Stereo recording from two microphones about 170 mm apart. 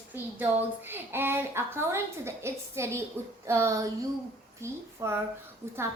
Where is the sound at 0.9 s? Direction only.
10° right (ahead or behind).